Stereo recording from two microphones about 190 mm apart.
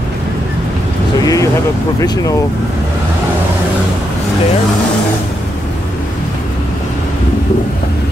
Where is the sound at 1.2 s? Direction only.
20° left (ahead or behind).